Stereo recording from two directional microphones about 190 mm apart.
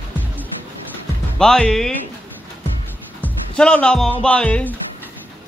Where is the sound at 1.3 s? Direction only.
5° left (ahead or behind).